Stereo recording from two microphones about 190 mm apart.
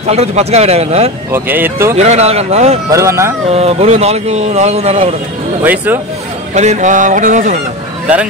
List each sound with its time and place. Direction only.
0.0 s speech: 35° right (ahead or behind)
1.3 s speech: 10° right (ahead or behind)
2.0 s speech: 35° right (ahead or behind)
2.9 s speech: 15° right (ahead or behind)
3.4 s speech: 35° right (ahead or behind)
5.6 s speech: 10° right (ahead or behind)
6.5 s speech: 35° right (ahead or behind)